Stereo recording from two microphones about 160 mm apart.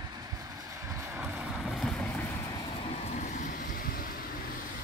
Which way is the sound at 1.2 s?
Centre (ahead or behind).